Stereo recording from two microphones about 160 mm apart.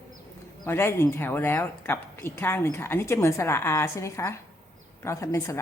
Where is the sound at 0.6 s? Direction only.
15° left (ahead or behind).